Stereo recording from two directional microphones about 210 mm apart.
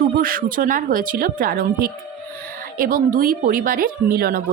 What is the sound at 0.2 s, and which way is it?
A woman's voice, 40° right (ahead or behind).